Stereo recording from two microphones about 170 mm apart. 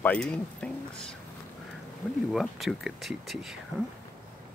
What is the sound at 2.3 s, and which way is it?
Speech, centre (ahead or behind).